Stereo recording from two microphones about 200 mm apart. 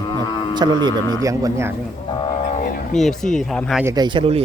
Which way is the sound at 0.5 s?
20° right (ahead or behind).